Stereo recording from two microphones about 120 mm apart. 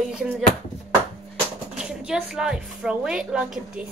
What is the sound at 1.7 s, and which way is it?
A woman's voice, 5° right (ahead or behind).